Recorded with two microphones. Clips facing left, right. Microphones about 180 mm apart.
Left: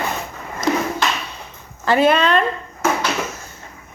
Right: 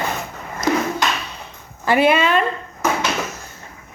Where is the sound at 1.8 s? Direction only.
10° right (ahead or behind).